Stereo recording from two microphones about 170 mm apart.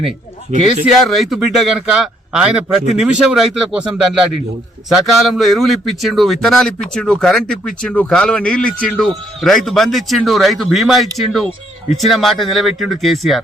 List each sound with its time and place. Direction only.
0.5 s speech: 40° right (ahead or behind)
1.1 s a man's voice: centre (ahead or behind)